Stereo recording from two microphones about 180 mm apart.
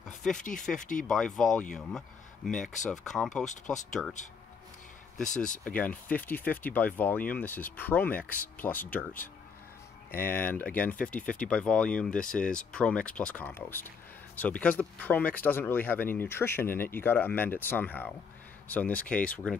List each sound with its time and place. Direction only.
0.7 s speech: 45° left (ahead or behind)
1.0 s speech: 5° left (ahead or behind)
1.9 s a sound: centre (ahead or behind)
2.8 s speech: centre (ahead or behind)
5.3 s speech: 45° left (ahead or behind)
5.7 s speech: 10° left (ahead or behind)